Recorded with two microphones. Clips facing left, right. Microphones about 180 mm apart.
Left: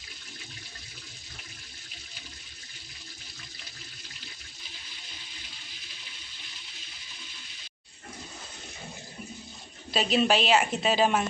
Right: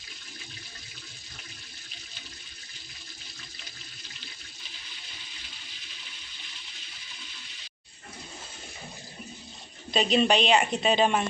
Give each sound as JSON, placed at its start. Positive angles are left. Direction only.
{"t": 9.9, "sound": "a woman's voice", "side_deg": 5}